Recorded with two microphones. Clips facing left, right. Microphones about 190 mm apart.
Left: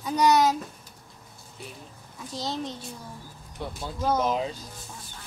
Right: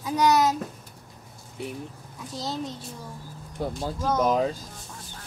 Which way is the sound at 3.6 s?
40° right (ahead or behind).